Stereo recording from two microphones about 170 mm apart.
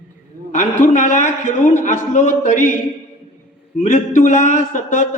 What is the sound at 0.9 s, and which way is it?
A man's voice, 45° left (ahead or behind).